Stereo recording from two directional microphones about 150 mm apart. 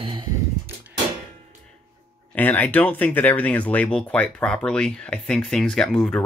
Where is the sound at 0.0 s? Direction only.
35° right (ahead or behind).